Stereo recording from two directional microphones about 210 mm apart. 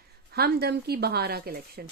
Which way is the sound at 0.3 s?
50° right (ahead or behind).